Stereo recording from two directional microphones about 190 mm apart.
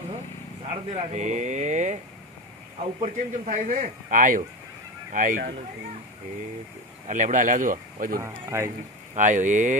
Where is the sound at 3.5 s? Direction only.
45° right (ahead or behind).